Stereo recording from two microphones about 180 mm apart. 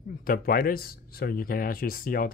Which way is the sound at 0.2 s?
55° left (ahead or behind).